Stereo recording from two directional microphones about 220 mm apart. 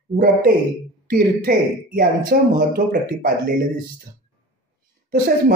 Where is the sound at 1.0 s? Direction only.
40° right (ahead or behind).